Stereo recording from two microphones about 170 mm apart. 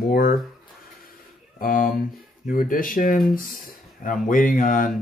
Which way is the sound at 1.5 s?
55° left (ahead or behind).